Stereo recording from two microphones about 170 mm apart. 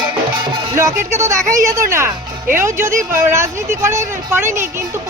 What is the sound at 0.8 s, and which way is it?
Music, 15° right (ahead or behind).